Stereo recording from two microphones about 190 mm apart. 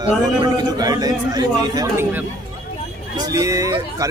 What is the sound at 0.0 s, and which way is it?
A man's voice, 25° right (ahead or behind).